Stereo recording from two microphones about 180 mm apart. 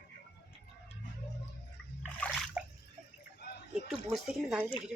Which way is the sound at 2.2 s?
10° left (ahead or behind).